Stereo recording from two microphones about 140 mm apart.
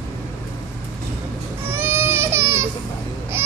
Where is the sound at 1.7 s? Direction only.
15° right (ahead or behind).